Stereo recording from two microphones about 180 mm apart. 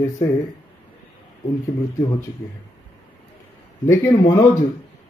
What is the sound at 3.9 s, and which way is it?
Speech, 15° left (ahead or behind).